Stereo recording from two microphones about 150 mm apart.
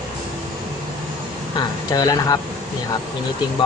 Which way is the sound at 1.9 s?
25° left (ahead or behind).